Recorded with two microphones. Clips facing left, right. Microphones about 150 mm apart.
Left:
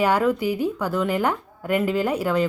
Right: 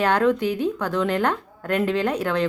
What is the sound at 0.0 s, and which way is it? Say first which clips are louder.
A woman's voice: even; 10° left (ahead or behind).